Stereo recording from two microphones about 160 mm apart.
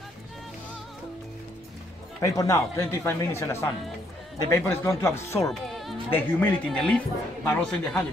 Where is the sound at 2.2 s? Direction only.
20° left (ahead or behind).